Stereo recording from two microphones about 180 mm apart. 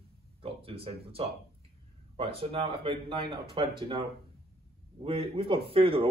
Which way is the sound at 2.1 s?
30° right (ahead or behind).